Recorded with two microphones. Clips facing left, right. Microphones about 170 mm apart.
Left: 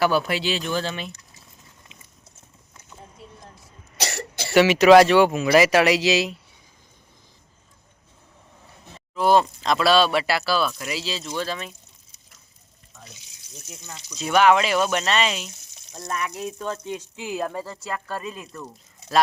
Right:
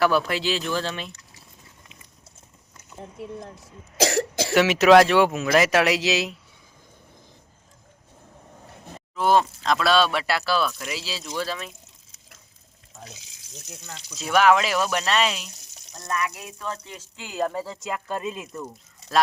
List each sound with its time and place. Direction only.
0.0 s speech: centre (ahead or behind)
3.9 s cough: 90° right
4.5 s speech: centre (ahead or behind)
9.1 s speech: centre (ahead or behind)
13.7 s speech: 5° left (ahead or behind)
16.1 s speech: 30° left (ahead or behind)
17.5 s speech: 10° right (ahead or behind)